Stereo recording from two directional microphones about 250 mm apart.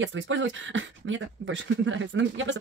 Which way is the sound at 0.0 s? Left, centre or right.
Right.